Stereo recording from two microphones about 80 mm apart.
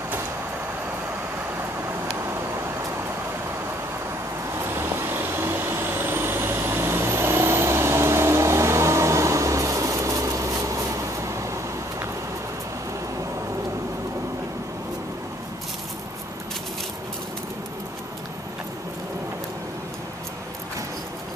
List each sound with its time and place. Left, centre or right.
4.6 s vehicle: right